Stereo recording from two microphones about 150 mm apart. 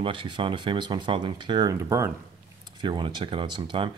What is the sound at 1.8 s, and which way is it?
Speech, 15° right (ahead or behind).